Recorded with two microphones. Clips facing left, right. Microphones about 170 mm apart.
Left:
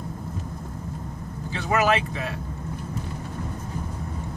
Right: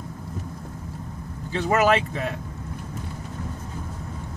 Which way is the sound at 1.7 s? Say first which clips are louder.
Right 2 dB; 50° right (ahead or behind).